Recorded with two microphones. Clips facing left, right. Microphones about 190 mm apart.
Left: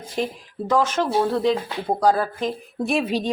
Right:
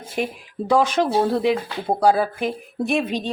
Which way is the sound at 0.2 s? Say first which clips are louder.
Right 1 dB; 10° right (ahead or behind).